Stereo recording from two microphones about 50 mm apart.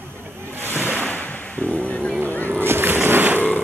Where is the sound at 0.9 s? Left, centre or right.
Left.